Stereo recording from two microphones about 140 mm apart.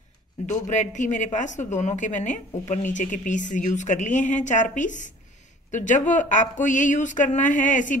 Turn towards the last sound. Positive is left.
turn(degrees=65)  # may be behind; listen again after turning